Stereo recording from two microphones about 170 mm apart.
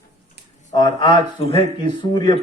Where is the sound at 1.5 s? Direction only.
45° right (ahead or behind).